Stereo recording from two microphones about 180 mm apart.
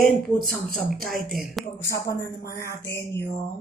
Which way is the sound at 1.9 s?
15° left (ahead or behind).